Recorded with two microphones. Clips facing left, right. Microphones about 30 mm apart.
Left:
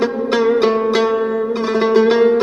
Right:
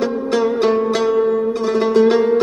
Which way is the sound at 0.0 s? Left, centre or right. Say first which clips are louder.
Left 2 dB; centre.